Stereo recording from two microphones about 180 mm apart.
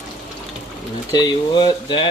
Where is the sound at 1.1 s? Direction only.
25° left (ahead or behind).